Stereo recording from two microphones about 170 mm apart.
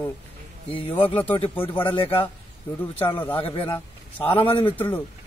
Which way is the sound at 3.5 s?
30° left (ahead or behind).